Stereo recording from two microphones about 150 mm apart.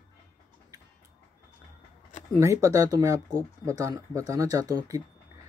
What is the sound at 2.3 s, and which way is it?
Speech, 20° right (ahead or behind).